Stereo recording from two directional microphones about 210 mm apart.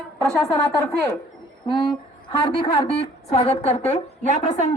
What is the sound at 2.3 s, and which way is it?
A woman's voice, 25° left (ahead or behind).